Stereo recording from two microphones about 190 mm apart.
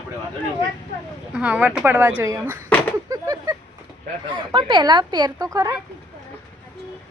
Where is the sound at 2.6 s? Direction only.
10° left (ahead or behind).